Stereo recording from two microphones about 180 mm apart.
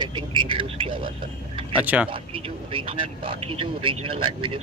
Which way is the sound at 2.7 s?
30° right (ahead or behind).